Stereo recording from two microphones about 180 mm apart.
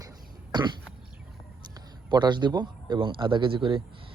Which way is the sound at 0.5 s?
25° right (ahead or behind).